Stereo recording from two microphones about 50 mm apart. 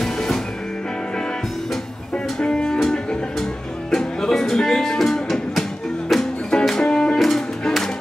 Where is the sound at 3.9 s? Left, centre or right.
Centre.